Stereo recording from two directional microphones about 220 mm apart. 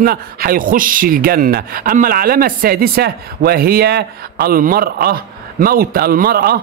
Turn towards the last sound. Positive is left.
turn(degrees=-45)  # may be behind; listen again after turning